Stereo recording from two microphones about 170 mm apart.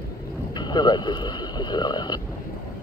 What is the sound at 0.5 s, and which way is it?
Speech, 25° left (ahead or behind).